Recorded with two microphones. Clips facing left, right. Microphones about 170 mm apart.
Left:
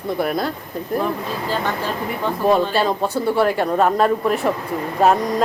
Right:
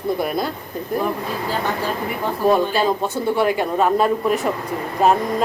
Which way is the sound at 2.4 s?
5° right (ahead or behind).